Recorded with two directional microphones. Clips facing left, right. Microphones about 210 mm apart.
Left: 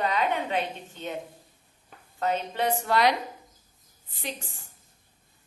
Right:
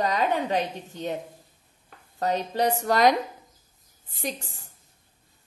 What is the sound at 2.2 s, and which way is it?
Speech, 40° right (ahead or behind).